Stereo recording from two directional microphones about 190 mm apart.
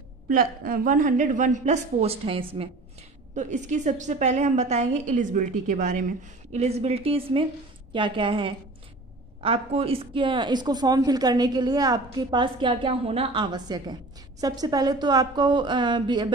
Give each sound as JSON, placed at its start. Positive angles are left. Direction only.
{"t": 0.3, "sound": "a woman's voice", "side_deg": -50}